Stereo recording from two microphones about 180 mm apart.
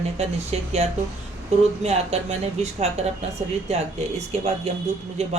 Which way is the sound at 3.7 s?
35° right (ahead or behind).